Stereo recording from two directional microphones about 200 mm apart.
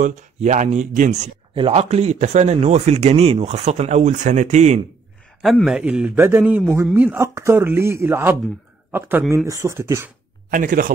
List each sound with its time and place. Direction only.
0.0 s speech: 35° right (ahead or behind)
5.4 s a man's voice: centre (ahead or behind)
10.5 s speech: 45° right (ahead or behind)